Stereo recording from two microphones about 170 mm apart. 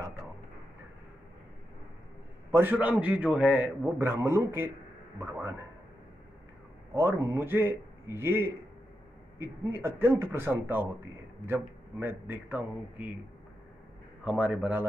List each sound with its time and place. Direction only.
2.5 s speech: 10° right (ahead or behind)
6.9 s speech: 15° right (ahead or behind)
14.2 s speech: 5° right (ahead or behind)